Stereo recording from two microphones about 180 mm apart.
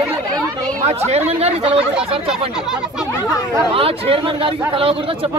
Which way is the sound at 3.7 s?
30° right (ahead or behind).